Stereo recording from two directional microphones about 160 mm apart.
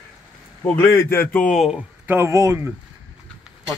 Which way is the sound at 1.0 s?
15° left (ahead or behind).